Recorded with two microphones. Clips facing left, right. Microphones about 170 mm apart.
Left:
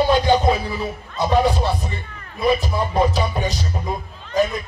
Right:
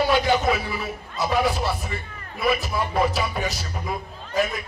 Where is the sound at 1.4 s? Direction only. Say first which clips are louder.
Left 4 dB; centre (ahead or behind).